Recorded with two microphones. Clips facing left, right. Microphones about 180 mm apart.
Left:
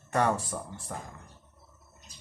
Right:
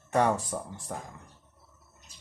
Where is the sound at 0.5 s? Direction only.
15° right (ahead or behind).